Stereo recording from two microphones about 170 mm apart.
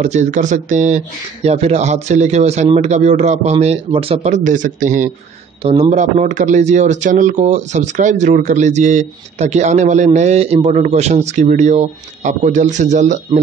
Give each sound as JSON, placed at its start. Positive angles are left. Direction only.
{"t": 0.0, "sound": "speech", "side_deg": -45}
{"t": 5.6, "sound": "speech", "side_deg": -35}